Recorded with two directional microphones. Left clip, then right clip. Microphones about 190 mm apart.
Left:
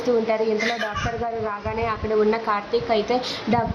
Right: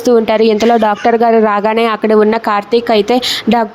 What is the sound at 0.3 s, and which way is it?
A woman's voice, 50° right (ahead or behind).